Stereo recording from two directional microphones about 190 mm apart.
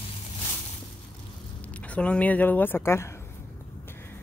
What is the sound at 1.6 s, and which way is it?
Speech, 5° left (ahead or behind).